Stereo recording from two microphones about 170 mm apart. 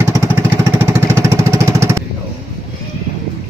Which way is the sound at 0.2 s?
15° right (ahead or behind).